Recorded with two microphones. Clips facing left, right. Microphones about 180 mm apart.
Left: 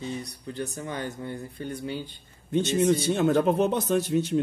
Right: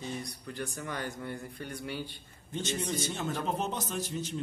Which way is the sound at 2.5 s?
65° left (ahead or behind).